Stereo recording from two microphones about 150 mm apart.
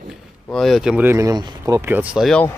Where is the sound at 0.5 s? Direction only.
Centre (ahead or behind).